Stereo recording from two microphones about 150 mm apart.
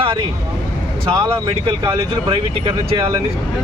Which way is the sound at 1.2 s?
30° right (ahead or behind).